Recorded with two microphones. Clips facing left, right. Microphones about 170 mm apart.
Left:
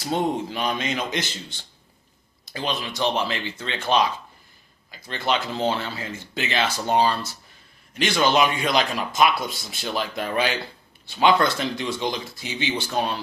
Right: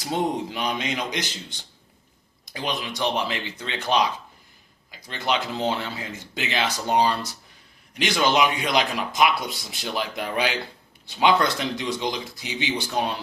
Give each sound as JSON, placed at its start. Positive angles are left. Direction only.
{"t": 0.3, "sound": "a man's voice", "side_deg": -20}